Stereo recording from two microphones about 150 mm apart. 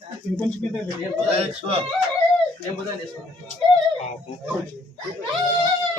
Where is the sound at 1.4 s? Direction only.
40° right (ahead or behind).